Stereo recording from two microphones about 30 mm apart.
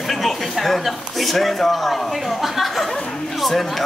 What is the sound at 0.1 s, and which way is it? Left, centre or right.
Speech, centre.